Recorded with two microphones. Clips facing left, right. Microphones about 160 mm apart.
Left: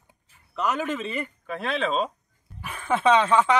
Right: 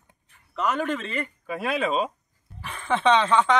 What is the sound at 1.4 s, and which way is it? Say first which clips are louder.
Speech: right 2 dB; 5° right (ahead or behind).